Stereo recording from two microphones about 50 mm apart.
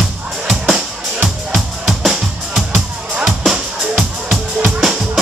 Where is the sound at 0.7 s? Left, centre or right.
Centre.